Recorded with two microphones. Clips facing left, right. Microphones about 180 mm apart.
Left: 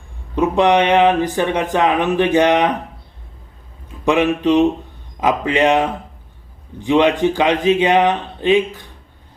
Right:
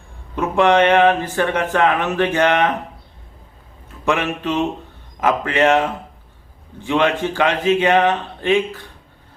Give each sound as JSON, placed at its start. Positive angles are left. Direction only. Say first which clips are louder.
{"t": 0.3, "sound": "speech", "louder": "left 1 dB", "side_deg": 15}
{"t": 4.0, "sound": "speech", "louder": "left 5 dB", "side_deg": 15}